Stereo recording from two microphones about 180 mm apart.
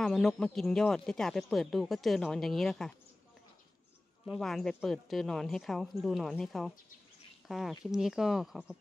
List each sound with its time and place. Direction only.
0.0 s speech: centre (ahead or behind)
4.3 s speech: centre (ahead or behind)